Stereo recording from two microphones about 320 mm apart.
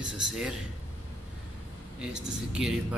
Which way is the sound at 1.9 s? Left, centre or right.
Centre.